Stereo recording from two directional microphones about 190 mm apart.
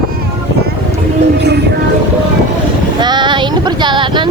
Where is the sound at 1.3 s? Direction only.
60° right (ahead or behind).